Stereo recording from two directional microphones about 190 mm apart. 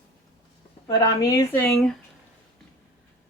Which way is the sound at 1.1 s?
20° left (ahead or behind).